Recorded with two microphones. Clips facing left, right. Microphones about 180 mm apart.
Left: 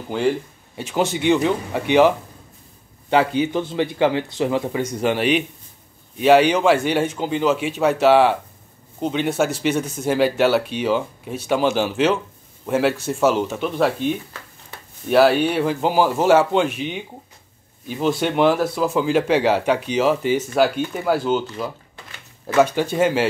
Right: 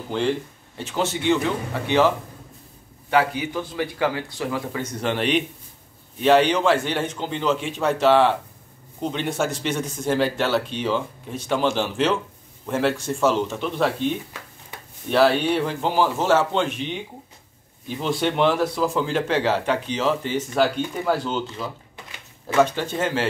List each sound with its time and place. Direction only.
0.1 s speech: 10° left (ahead or behind)
5.0 s speech: 5° left (ahead or behind)
14.7 s a sound: 15° right (ahead or behind)
15.0 s speech: 5° left (ahead or behind)